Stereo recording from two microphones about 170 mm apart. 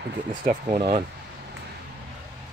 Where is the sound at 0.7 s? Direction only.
35° right (ahead or behind).